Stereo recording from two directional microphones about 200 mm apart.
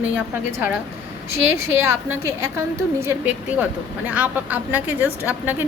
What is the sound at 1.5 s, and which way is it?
A woman's voice, 15° right (ahead or behind).